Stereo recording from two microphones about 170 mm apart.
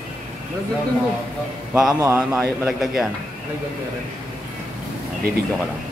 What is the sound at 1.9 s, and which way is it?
Speech, 15° right (ahead or behind).